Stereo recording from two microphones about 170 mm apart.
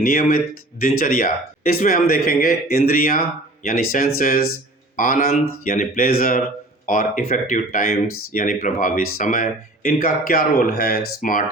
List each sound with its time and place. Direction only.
0.0 s speech: 60° left (ahead or behind)